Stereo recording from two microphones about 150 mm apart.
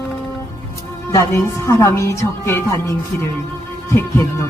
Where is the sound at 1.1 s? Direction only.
20° left (ahead or behind).